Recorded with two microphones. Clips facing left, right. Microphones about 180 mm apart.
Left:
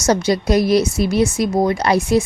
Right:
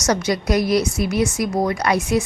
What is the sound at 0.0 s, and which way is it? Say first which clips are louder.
Speech: left 4 dB; 30° left (ahead or behind).